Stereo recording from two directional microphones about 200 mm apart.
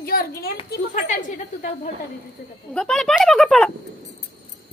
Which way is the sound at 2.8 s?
Centre (ahead or behind).